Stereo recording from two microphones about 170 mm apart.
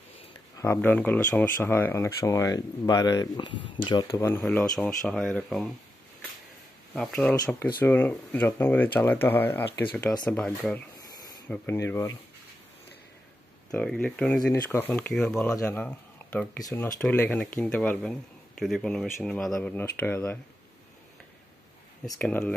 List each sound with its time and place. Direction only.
0.7 s speech: 10° left (ahead or behind)
4.4 s speech: 5° left (ahead or behind)
7.0 s speech: 5° left (ahead or behind)
13.7 s speech: 5° left (ahead or behind)
22.2 s speech: 5° left (ahead or behind)